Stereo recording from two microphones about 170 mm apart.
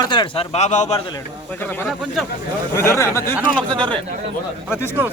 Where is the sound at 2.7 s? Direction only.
15° left (ahead or behind).